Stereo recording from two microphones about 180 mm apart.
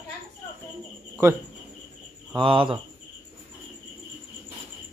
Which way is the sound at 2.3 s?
30° right (ahead or behind).